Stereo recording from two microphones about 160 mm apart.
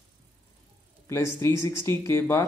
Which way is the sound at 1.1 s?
15° left (ahead or behind).